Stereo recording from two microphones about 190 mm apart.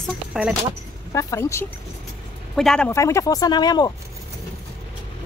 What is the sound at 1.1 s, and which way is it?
Speech, 15° left (ahead or behind).